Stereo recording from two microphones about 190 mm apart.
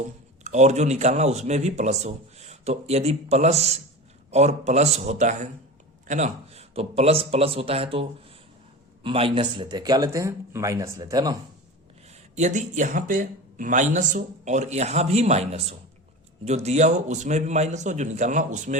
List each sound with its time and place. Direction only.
0.4 s speech: 35° right (ahead or behind)
9.0 s speech: 30° right (ahead or behind)
12.0 s speech: 40° right (ahead or behind)